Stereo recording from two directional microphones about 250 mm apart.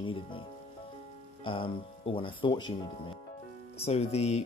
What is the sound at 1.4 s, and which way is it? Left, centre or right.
Speech, centre.